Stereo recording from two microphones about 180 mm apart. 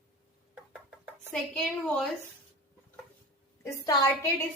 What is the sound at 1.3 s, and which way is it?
Speech, 5° left (ahead or behind).